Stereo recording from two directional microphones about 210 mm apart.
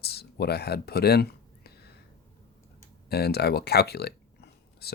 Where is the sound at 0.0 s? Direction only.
50° left (ahead or behind).